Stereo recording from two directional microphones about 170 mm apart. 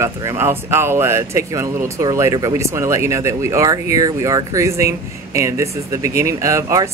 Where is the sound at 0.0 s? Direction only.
15° right (ahead or behind).